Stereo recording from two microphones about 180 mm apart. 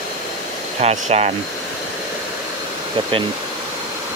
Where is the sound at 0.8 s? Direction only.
35° right (ahead or behind).